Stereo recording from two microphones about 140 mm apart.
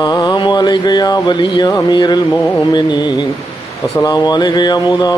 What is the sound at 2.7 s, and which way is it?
Speech, 30° left (ahead or behind).